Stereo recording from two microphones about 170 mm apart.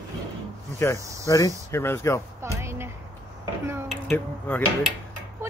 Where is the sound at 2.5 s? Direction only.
15° right (ahead or behind).